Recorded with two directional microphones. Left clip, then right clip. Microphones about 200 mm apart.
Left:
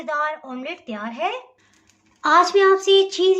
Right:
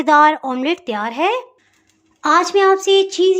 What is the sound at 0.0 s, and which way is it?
A woman's voice, 55° right (ahead or behind).